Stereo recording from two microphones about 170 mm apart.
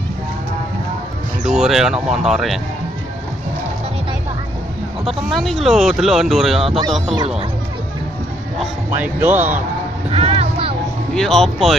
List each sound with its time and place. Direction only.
1.4 s speech: 5° right (ahead or behind)
5.3 s speech: centre (ahead or behind)
6.6 s speech: 35° right (ahead or behind)
8.9 s speech: 10° right (ahead or behind)
10.0 s music: 35° right (ahead or behind)
11.1 s speech: centre (ahead or behind)